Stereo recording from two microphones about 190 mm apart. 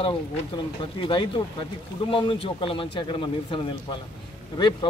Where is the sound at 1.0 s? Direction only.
25° left (ahead or behind).